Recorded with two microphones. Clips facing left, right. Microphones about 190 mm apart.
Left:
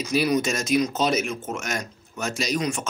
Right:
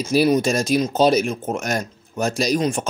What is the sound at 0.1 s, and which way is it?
Speech, 35° right (ahead or behind).